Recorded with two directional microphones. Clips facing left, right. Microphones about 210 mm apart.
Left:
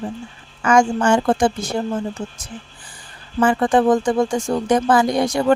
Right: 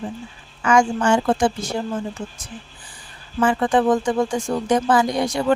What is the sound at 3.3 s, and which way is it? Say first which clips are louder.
Speech: left 2 dB; 45° left (ahead or behind).